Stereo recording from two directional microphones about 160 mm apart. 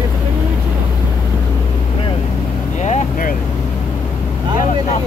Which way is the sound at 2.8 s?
45° left (ahead or behind).